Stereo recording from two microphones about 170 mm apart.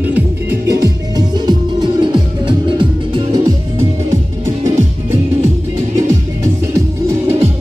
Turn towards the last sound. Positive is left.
turn(degrees=-15)  # may be behind; listen again after turning